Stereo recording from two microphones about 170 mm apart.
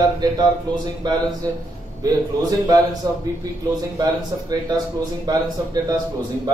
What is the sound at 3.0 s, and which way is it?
A man's voice, 20° right (ahead or behind).